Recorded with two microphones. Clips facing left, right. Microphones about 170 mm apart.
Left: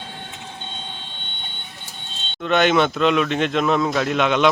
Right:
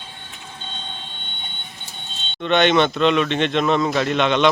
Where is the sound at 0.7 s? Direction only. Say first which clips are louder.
Even; 5° left (ahead or behind).